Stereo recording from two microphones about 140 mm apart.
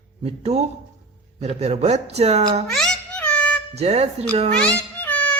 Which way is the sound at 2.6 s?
5° left (ahead or behind).